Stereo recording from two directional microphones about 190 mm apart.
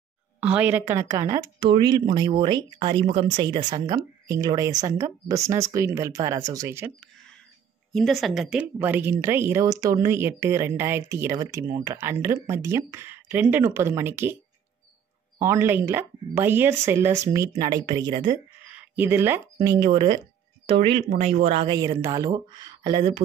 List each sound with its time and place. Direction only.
0.4 s speech: 5° right (ahead or behind)
7.9 s speech: centre (ahead or behind)
15.3 s speech: 15° right (ahead or behind)
18.7 s speech: 10° right (ahead or behind); by 21.7 s 30° right (ahead or behind)
21.7 s speech: 20° right (ahead or behind)